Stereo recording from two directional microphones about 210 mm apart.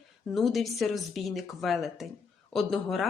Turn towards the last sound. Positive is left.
turn(degrees=0)  # may be behind; listen again after turning